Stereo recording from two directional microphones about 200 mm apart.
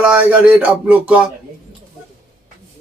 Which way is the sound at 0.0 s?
5° right (ahead or behind).